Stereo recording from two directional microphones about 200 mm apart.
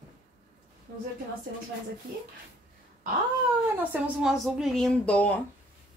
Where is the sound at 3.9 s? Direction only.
5° right (ahead or behind).